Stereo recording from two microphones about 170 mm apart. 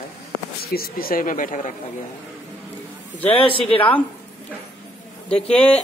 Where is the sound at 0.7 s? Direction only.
60° left (ahead or behind).